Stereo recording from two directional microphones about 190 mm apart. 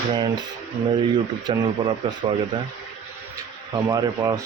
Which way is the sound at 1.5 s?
25° right (ahead or behind).